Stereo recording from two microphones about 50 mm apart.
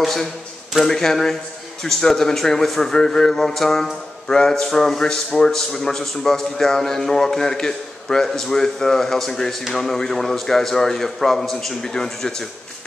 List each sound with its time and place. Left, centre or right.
0.0 s a man's voice: centre